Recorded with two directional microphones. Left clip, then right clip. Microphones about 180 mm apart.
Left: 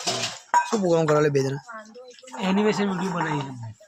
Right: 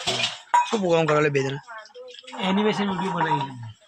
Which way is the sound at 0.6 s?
35° left (ahead or behind).